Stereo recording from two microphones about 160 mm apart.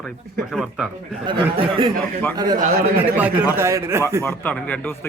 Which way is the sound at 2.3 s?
25° right (ahead or behind).